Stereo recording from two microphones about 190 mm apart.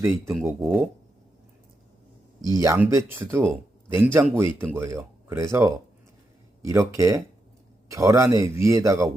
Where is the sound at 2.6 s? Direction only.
15° right (ahead or behind).